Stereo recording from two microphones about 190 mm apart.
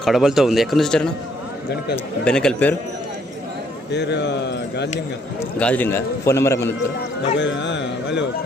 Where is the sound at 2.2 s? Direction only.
5° left (ahead or behind).